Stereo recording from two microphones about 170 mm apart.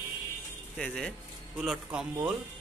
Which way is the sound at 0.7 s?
5° left (ahead or behind).